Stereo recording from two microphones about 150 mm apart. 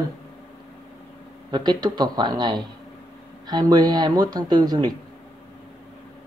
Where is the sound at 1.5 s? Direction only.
30° right (ahead or behind).